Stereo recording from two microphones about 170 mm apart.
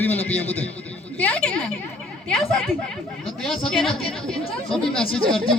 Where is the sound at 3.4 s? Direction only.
Centre (ahead or behind).